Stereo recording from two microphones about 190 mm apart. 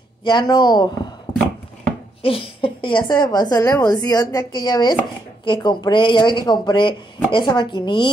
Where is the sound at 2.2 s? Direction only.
30° left (ahead or behind).